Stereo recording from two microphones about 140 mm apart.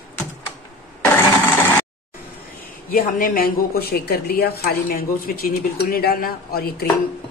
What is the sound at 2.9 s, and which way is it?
A woman's voice, 85° left.